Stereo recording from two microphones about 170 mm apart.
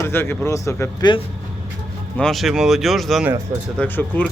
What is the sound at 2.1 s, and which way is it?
Speech, 5° left (ahead or behind).